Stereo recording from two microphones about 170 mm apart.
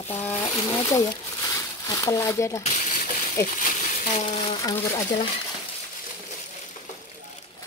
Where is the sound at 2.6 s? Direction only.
45° left (ahead or behind).